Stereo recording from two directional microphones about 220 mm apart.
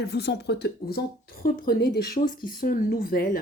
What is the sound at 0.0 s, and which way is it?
Speech, 50° left (ahead or behind).